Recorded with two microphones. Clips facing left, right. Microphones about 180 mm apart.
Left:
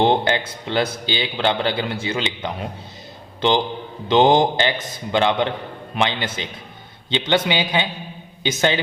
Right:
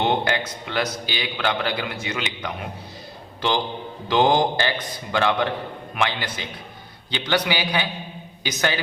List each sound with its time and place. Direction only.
0.0 s a man's voice: 30° left (ahead or behind)